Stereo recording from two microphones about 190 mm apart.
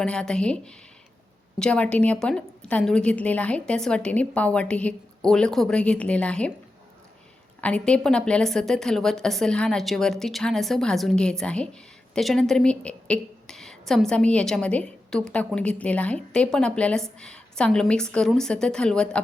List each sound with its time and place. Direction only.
0.0 s a woman's voice: 5° left (ahead or behind)
7.6 s a woman's voice: 5° left (ahead or behind)